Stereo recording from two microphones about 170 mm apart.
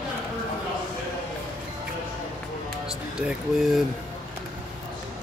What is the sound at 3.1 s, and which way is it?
Speech, 5° right (ahead or behind).